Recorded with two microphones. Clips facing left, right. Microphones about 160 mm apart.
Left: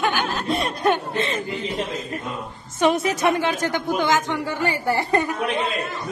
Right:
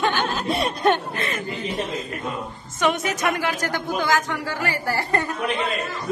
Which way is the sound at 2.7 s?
30° left (ahead or behind).